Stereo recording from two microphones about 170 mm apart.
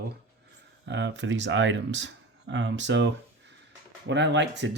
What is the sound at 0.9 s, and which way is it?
Speech, 90° right.